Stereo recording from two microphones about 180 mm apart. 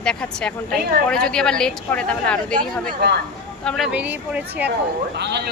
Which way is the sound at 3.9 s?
5° right (ahead or behind).